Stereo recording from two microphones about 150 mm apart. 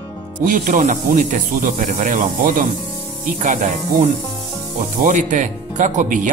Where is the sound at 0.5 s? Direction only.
65° right (ahead or behind).